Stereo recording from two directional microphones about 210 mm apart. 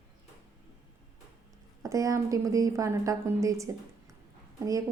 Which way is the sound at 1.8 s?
15° right (ahead or behind).